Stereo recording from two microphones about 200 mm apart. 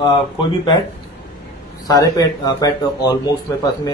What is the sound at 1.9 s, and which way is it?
Speech, 20° left (ahead or behind).